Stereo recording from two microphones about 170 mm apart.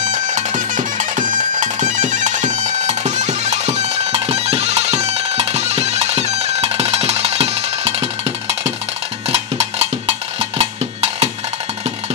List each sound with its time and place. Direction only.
0.0 s bagpipes: 45° right (ahead or behind)
9.3 s percussion: 40° right (ahead or behind)